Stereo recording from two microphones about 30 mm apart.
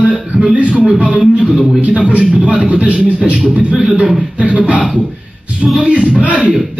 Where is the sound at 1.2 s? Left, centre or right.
Right.